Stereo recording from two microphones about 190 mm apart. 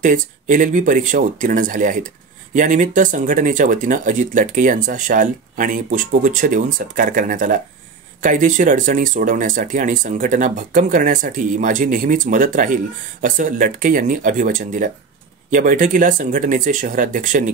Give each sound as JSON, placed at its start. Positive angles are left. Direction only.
{"t": 0.0, "sound": "speech", "side_deg": -45}